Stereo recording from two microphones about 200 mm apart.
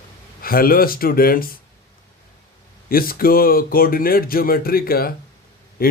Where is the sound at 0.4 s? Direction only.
45° left (ahead or behind).